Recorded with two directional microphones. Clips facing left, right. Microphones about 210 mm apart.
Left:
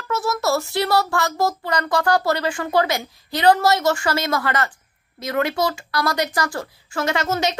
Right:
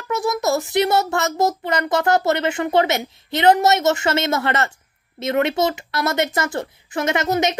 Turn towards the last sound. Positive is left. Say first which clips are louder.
# right 2 dB
turn(degrees=-20)  # may be behind; listen again after turning